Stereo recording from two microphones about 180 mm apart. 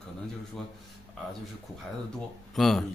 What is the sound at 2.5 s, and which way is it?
Speech, centre (ahead or behind).